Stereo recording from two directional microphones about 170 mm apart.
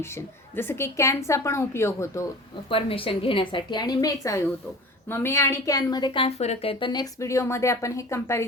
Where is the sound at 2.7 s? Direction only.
30° left (ahead or behind).